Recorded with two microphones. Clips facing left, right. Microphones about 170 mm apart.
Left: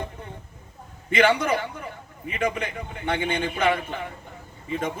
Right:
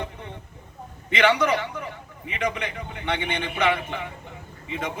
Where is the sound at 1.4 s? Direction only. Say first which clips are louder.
Right 2 dB; 50° left (ahead or behind).